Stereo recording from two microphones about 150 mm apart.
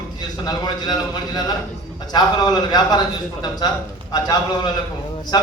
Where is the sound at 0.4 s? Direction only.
25° left (ahead or behind).